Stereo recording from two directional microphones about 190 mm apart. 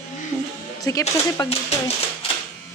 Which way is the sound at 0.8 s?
20° left (ahead or behind).